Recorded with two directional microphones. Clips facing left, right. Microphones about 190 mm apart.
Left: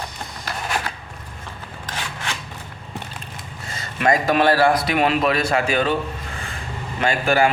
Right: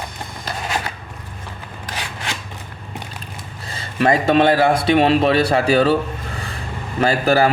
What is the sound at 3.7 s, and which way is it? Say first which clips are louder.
A man's voice: right 3 dB; 30° right (ahead or behind).